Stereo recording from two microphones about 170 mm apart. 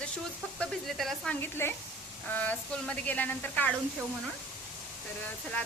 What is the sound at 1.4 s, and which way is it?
A woman's voice, 15° left (ahead or behind).